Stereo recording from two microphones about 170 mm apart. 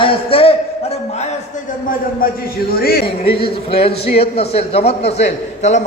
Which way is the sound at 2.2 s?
60° left (ahead or behind).